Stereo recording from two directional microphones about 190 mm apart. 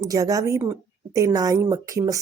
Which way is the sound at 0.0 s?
20° right (ahead or behind).